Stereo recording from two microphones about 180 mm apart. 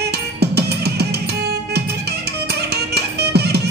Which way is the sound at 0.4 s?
65° right (ahead or behind).